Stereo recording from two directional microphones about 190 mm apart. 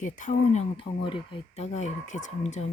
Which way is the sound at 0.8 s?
25° left (ahead or behind).